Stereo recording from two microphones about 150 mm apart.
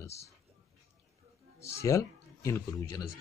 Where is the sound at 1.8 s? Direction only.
20° left (ahead or behind).